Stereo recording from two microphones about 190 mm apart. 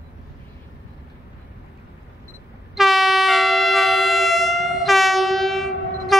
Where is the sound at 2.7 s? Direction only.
Centre (ahead or behind).